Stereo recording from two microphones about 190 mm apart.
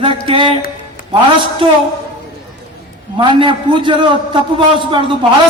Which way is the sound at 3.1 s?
25° right (ahead or behind).